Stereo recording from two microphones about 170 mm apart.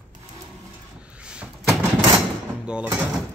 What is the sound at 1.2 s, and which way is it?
Door, 5° right (ahead or behind).